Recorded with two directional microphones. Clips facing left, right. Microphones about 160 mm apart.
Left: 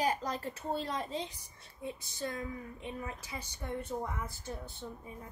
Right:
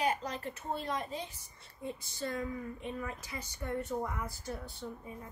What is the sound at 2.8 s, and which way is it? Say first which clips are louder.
A woman's voice: right 2 dB; 15° left (ahead or behind).